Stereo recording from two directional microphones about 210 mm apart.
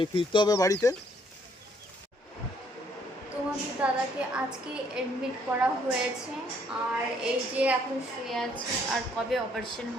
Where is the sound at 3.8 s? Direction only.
5° right (ahead or behind).